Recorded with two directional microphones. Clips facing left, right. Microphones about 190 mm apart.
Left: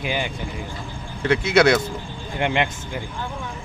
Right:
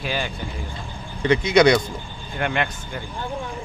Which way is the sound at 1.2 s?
5° left (ahead or behind).